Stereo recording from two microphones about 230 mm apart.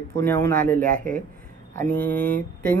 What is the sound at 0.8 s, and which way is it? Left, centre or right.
Speech, right.